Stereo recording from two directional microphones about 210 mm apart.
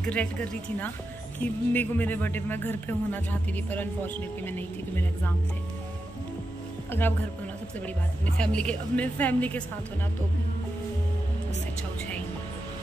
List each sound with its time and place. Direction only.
0.0 s speech: 5° left (ahead or behind)
1.4 s speech: 10° left (ahead or behind)
6.9 s speech: 10° left (ahead or behind)
8.4 s speech: 5° left (ahead or behind)